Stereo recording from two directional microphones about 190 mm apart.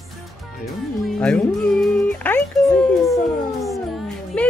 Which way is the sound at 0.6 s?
Centre (ahead or behind).